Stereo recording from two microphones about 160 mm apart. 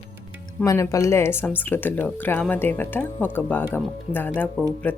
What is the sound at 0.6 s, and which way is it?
Speech, 20° left (ahead or behind).